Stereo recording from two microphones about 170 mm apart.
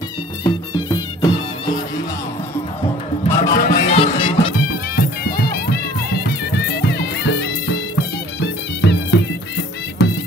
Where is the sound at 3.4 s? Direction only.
55° left (ahead or behind).